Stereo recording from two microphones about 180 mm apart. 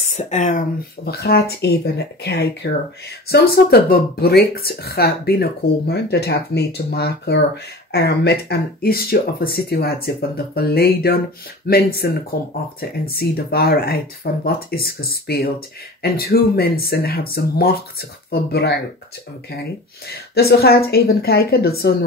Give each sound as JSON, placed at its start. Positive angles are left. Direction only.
{"t": 0.1, "sound": "speech", "side_deg": 40}
{"t": 3.9, "sound": "speech", "side_deg": 60}
{"t": 20.1, "sound": "speech", "side_deg": 60}